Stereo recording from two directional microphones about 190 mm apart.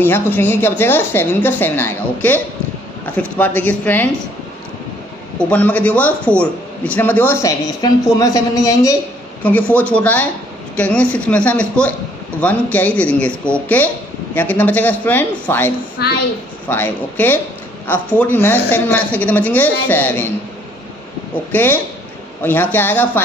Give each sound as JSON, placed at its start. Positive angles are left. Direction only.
{"t": 0.0, "sound": "a woman's voice", "side_deg": 10}
{"t": 5.4, "sound": "a woman's voice", "side_deg": 10}
{"t": 9.4, "sound": "a woman's voice", "side_deg": 10}
{"t": 16.0, "sound": "a child's voice", "side_deg": 60}
{"t": 16.6, "sound": "a woman's voice", "side_deg": 10}
{"t": 21.5, "sound": "a woman's voice", "side_deg": 10}